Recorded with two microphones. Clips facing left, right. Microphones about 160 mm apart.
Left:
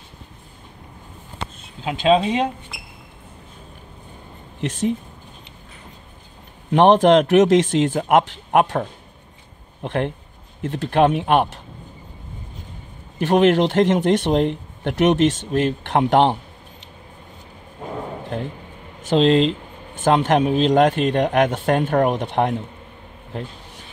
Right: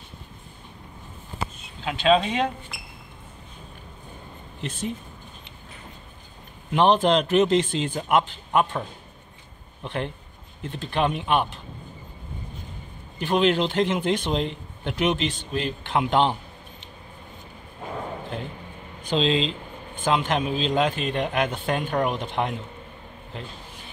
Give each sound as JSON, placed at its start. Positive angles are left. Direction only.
{"t": 2.0, "sound": "speech", "side_deg": 25}
{"t": 4.6, "sound": "speech", "side_deg": 80}
{"t": 6.7, "sound": "a man's voice", "side_deg": 65}
{"t": 9.8, "sound": "speech", "side_deg": 65}
{"t": 10.6, "sound": "a man's voice", "side_deg": 75}
{"t": 13.2, "sound": "a man's voice", "side_deg": 75}
{"t": 19.0, "sound": "a man's voice", "side_deg": 70}
{"t": 21.9, "sound": "speech", "side_deg": 55}